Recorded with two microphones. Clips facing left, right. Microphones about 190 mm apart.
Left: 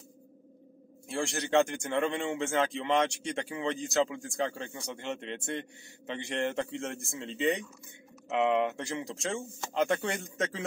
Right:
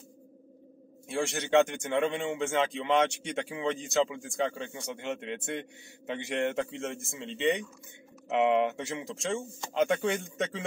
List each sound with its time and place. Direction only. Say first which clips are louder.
1.0 s a man's voice: right 1 dB; centre (ahead or behind)
8.3 s speech: right 2 dB; 20° right (ahead or behind)
8.7 s a man's voice: even; centre (ahead or behind)